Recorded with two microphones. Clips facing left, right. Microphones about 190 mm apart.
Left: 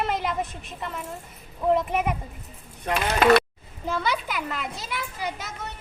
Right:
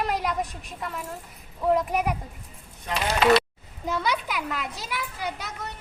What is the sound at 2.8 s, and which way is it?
Speech, 50° left (ahead or behind).